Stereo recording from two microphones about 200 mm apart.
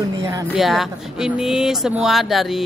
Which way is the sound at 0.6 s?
Centre (ahead or behind).